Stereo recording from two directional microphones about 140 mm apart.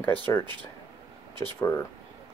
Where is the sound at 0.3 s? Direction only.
25° left (ahead or behind).